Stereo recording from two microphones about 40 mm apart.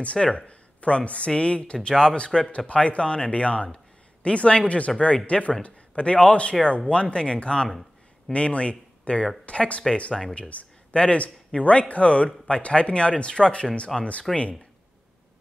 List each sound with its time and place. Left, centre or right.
0.0 s a man's voice: left
14.3 s speech: centre